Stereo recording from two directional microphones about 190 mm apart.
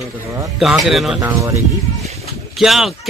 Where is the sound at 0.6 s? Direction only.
Centre (ahead or behind).